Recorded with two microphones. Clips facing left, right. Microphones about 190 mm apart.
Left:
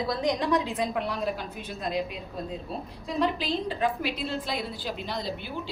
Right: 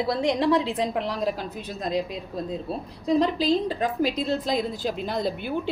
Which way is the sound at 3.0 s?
40° right (ahead or behind).